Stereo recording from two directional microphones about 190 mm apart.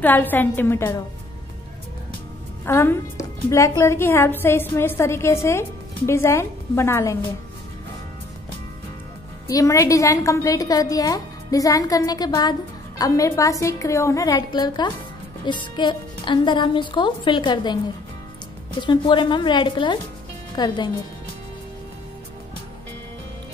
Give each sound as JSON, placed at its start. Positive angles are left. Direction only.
{"t": 0.0, "sound": "a woman's voice", "side_deg": 10}
{"t": 2.6, "sound": "a woman's voice", "side_deg": 10}
{"t": 9.5, "sound": "a woman's voice", "side_deg": 15}
{"t": 18.8, "sound": "a woman's voice", "side_deg": 25}